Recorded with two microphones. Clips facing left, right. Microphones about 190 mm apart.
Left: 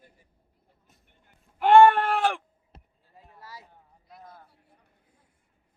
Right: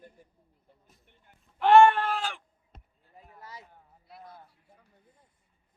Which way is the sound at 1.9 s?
60° left (ahead or behind).